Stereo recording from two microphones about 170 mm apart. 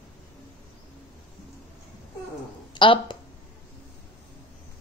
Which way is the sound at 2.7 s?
30° left (ahead or behind).